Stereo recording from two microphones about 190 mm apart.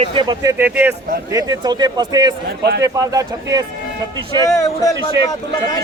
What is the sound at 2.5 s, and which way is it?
Speech, 60° right (ahead or behind).